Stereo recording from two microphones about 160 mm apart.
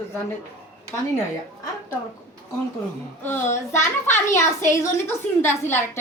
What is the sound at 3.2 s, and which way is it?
A child's voice, 15° left (ahead or behind).